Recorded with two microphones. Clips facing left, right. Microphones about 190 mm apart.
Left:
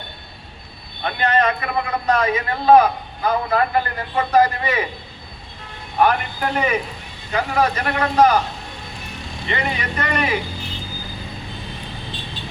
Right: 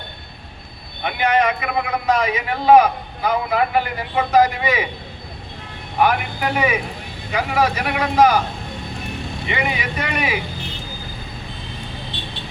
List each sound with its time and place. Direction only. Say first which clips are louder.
1.0 s a man's voice: right 1 dB; 15° right (ahead or behind)
6.0 s a man's voice: even; 10° right (ahead or behind)
9.5 s a man's voice: even; 10° right (ahead or behind)
12.1 s vehicle: right 1 dB; 75° right (ahead or behind)